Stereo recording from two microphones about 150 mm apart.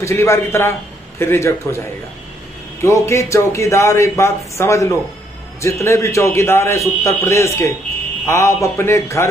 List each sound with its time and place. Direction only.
0.0 s a man's voice: 20° left (ahead or behind)
2.8 s speech: 20° left (ahead or behind)